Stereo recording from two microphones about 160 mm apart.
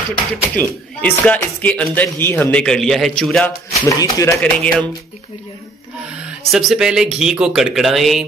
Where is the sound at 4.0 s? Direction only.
20° left (ahead or behind).